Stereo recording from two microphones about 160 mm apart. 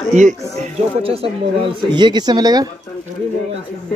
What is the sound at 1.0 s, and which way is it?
A man's voice, 35° right (ahead or behind).